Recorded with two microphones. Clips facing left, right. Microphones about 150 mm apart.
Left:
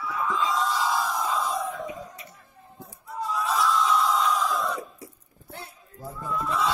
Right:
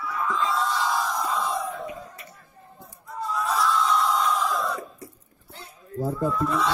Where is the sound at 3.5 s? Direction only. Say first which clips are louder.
Even; centre (ahead or behind).